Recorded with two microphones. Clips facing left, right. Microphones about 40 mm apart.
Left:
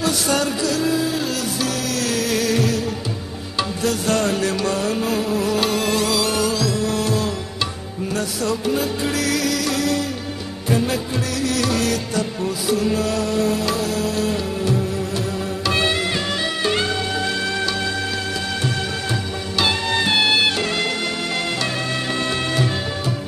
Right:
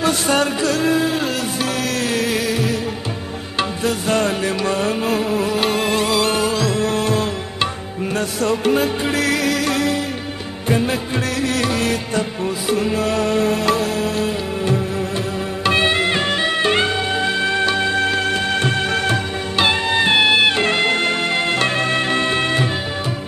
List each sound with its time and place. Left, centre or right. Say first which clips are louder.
0.0 s music: right 3 dB; right
19.6 s music: right 3 dB; right